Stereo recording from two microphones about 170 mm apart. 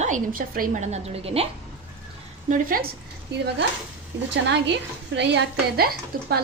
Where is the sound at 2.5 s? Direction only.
55° right (ahead or behind).